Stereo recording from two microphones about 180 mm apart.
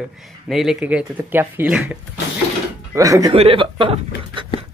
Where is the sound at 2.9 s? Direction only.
20° right (ahead or behind).